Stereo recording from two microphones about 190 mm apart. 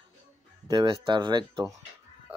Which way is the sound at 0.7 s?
25° right (ahead or behind).